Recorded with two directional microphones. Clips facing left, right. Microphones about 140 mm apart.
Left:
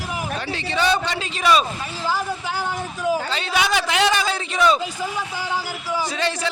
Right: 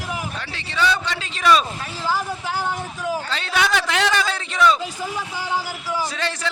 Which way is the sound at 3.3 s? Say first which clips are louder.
Even; centre (ahead or behind).